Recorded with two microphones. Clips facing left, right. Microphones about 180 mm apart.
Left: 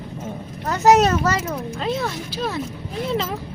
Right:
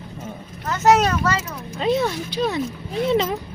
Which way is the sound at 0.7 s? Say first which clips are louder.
Left 2 dB; 35° left (ahead or behind).